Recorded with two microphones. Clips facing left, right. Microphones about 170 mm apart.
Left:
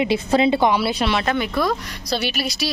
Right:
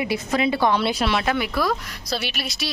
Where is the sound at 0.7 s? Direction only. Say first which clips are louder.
Left 1 dB; centre (ahead or behind).